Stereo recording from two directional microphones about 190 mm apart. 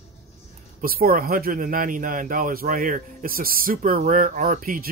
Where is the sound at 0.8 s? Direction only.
50° right (ahead or behind).